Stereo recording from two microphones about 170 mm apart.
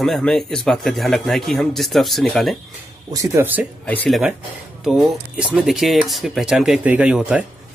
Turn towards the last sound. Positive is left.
turn(degrees=-5)  # may be behind; listen again after turning